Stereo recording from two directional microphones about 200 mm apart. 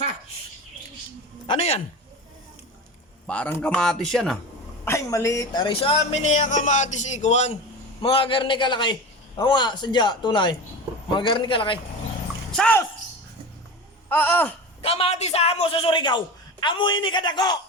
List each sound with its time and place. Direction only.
1.5 s a man's voice: 30° left (ahead or behind)
3.2 s speech: 5° left (ahead or behind)
4.9 s a man's voice: 15° left (ahead or behind)
12.5 s speech: 5° left (ahead or behind)
14.1 s a sound: 10° left (ahead or behind)
14.8 s a man's voice: 30° left (ahead or behind)